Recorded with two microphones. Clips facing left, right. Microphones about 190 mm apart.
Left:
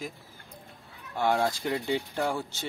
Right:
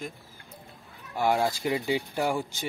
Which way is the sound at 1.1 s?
5° right (ahead or behind).